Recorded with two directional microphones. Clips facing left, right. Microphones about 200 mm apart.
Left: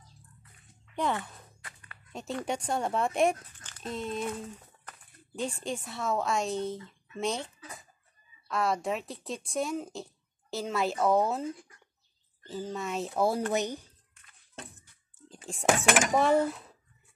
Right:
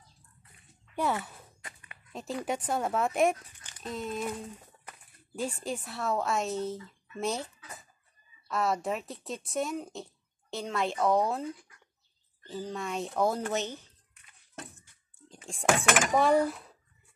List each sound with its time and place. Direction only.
0.9 s speech: 10° right (ahead or behind)
1.6 s a sound: 20° right (ahead or behind)
2.1 s speech: centre (ahead or behind)
3.4 s a sound: 15° right (ahead or behind)
3.8 s speech: centre (ahead or behind)
15.1 s whispering: centre (ahead or behind)
16.2 s speech: centre (ahead or behind)